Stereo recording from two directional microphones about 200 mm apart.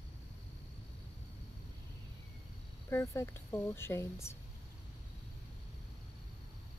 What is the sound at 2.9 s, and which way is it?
A woman's voice, 15° left (ahead or behind).